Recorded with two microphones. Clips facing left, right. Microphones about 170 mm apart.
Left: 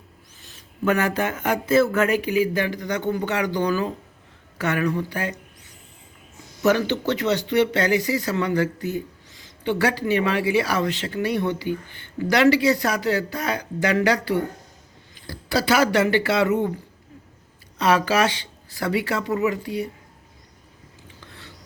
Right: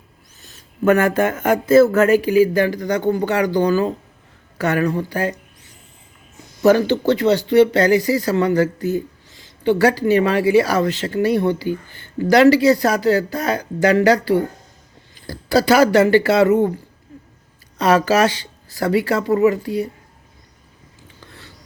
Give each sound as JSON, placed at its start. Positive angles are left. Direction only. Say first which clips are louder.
{"t": 0.4, "sound": "speech", "louder": "right 7 dB", "side_deg": -45}
{"t": 6.6, "sound": "speech", "louder": "right 6 dB", "side_deg": -35}
{"t": 17.8, "sound": "speech", "louder": "right 5 dB", "side_deg": -40}